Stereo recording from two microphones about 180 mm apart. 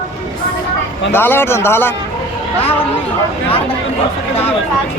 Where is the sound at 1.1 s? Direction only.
10° left (ahead or behind).